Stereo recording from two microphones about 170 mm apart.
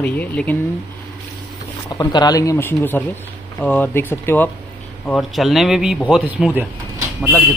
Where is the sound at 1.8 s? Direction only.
25° left (ahead or behind).